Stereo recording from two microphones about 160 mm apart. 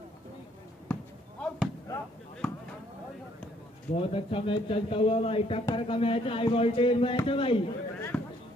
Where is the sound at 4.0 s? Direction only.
35° left (ahead or behind).